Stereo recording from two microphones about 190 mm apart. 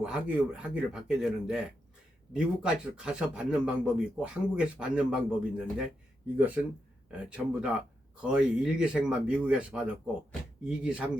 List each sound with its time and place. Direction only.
0.0 s a man's voice: 5° right (ahead or behind)